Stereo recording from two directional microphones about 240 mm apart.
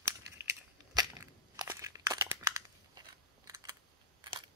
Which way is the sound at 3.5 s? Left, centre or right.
Centre.